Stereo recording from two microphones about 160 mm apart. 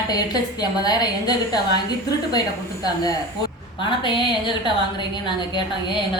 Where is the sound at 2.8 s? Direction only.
25° left (ahead or behind).